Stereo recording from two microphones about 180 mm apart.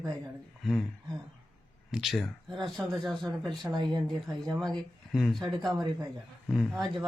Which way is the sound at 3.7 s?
25° right (ahead or behind).